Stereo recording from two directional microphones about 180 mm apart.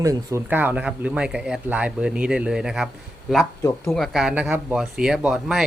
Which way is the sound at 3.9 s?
Centre (ahead or behind).